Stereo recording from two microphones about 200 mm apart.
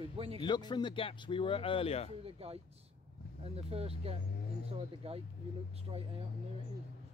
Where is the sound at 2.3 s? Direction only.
30° right (ahead or behind).